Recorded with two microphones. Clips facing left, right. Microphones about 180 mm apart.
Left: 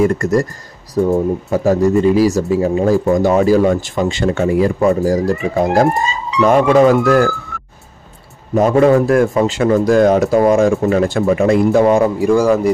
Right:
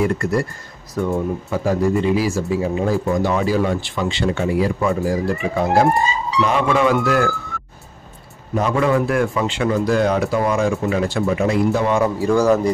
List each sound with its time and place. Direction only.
0.0 s speech: 45° left (ahead or behind)
1.0 s speech: 30° left (ahead or behind)
1.5 s speech: 45° left (ahead or behind)
8.5 s speech: 45° left (ahead or behind)
12.0 s speech: 15° left (ahead or behind)